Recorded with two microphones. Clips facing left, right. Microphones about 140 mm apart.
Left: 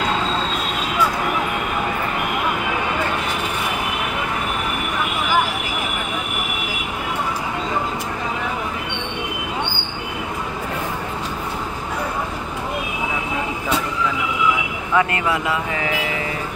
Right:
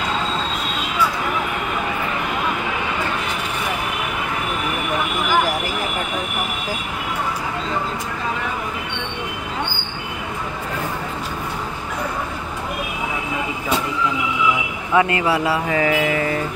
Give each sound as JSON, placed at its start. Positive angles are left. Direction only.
{"t": 15.0, "sound": "speech", "side_deg": -25}